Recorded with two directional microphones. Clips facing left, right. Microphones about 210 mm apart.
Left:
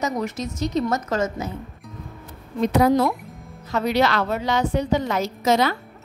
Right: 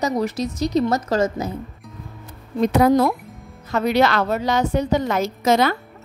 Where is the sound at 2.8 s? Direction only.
50° right (ahead or behind).